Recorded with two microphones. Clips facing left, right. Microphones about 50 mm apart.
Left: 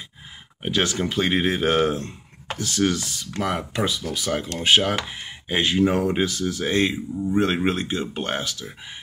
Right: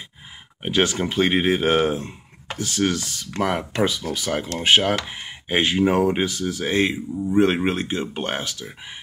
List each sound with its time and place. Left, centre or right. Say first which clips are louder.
0.6 s speech: right 2 dB; right
2.5 s speech: even; right